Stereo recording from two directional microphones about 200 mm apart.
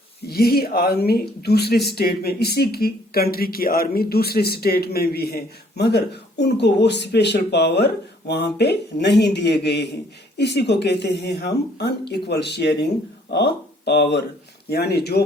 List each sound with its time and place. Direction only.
0.3 s speech: 50° left (ahead or behind)